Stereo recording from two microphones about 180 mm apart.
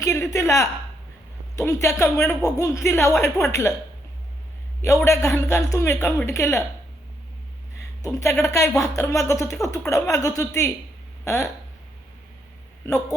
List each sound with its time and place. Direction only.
0.0 s a woman's voice: 15° left (ahead or behind)
5.0 s a woman's voice: 15° left (ahead or behind)
7.8 s a woman's voice: 15° left (ahead or behind)
12.8 s speech: 15° left (ahead or behind)